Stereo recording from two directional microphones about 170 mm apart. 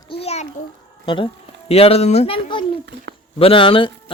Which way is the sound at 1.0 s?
30° left (ahead or behind).